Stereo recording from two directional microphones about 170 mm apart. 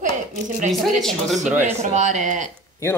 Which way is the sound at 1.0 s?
Centre (ahead or behind).